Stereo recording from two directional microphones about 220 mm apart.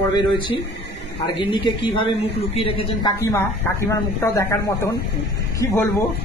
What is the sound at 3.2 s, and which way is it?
A man's voice, 15° left (ahead or behind).